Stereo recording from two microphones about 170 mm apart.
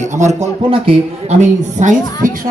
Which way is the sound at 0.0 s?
45° right (ahead or behind).